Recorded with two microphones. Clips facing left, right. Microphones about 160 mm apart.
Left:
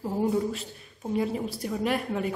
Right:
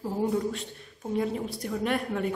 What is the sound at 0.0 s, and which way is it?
A woman's voice, 5° left (ahead or behind).